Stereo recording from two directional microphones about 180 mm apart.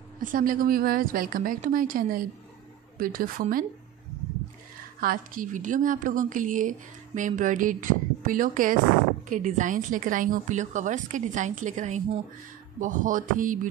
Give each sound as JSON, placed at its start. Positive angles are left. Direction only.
{"t": 0.2, "sound": "a woman's voice", "side_deg": -50}
{"t": 5.0, "sound": "a woman's voice", "side_deg": -50}